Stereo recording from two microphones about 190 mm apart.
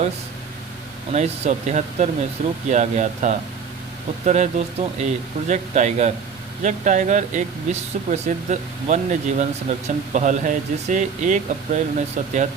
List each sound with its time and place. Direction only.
1.1 s speech: 35° right (ahead or behind)